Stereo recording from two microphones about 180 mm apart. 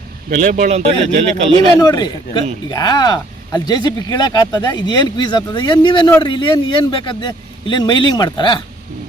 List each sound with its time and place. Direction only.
0.3 s speech: 45° right (ahead or behind)
1.8 s speech: 20° left (ahead or behind)